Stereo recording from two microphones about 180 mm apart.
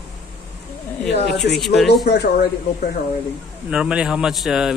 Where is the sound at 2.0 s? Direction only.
65° left (ahead or behind).